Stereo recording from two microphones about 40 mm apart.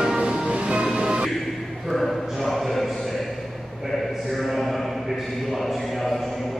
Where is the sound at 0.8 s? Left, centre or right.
Centre.